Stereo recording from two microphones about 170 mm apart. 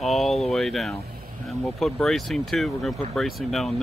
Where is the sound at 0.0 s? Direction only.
Centre (ahead or behind).